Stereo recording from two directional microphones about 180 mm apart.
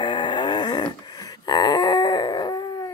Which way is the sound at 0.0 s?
25° left (ahead or behind).